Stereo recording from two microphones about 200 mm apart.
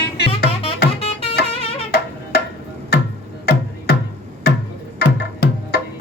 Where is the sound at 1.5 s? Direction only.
30° left (ahead or behind).